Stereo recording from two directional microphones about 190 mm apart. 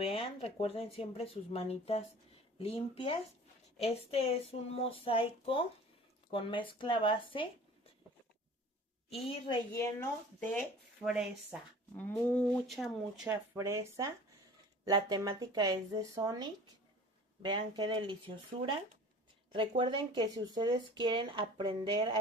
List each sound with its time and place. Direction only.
0.0 s speech: 30° left (ahead or behind)
9.7 s speech: 15° left (ahead or behind)
11.1 s speech: 5° right (ahead or behind)
12.0 s speech: 10° left (ahead or behind)
13.3 s speech: 15° right (ahead or behind)